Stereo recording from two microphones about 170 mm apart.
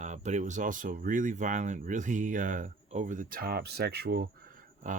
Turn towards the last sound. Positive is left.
turn(degrees=-60)  # may be behind; listen again after turning